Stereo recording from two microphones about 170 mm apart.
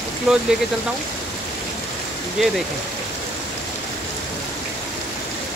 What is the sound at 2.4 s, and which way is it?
Speech, centre (ahead or behind).